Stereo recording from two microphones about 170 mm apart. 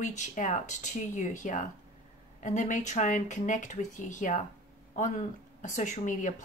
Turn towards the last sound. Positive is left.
turn(degrees=45)  # may be behind; listen again after turning